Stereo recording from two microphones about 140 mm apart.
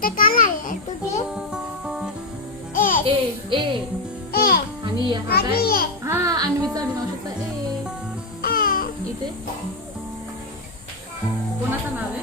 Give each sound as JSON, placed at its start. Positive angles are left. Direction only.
{"t": 0.0, "sound": "a sound", "side_deg": 85}
{"t": 1.4, "sound": "music", "side_deg": -5}
{"t": 2.7, "sound": "music", "side_deg": 80}
{"t": 3.1, "sound": "a sound", "side_deg": -35}
{"t": 4.3, "sound": "music", "side_deg": 90}
{"t": 5.3, "sound": "a child's voice", "side_deg": 90}
{"t": 6.1, "sound": "speech", "side_deg": -25}
{"t": 8.4, "sound": "music", "side_deg": 90}